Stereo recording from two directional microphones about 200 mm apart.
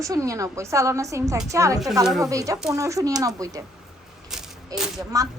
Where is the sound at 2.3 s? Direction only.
15° right (ahead or behind).